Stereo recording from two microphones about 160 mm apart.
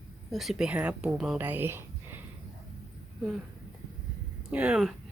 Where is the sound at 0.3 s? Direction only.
Centre (ahead or behind).